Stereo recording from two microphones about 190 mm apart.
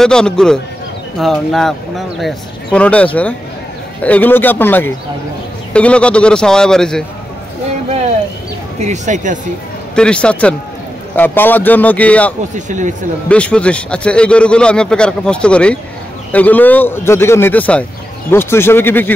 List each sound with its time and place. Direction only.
0.0 s a man's voice: 5° left (ahead or behind)
8.8 s speech: 40° right (ahead or behind)
9.9 s a man's voice: 5° left (ahead or behind)
12.5 s speech: 40° right (ahead or behind)
13.3 s a man's voice: 5° left (ahead or behind)